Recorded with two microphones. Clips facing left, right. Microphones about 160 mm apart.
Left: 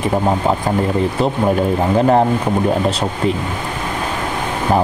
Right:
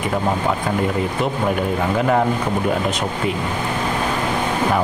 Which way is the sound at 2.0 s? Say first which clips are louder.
Left 5 dB; 35° left (ahead or behind).